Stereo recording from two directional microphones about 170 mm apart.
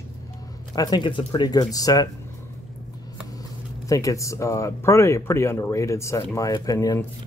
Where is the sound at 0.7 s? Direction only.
25° left (ahead or behind).